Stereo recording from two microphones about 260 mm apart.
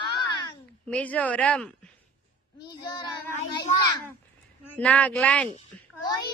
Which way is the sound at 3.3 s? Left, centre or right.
Centre.